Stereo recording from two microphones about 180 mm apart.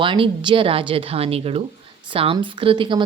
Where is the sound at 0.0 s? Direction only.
30° right (ahead or behind).